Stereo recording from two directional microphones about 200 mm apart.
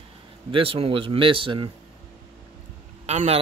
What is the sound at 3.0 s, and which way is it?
Speech, 35° right (ahead or behind).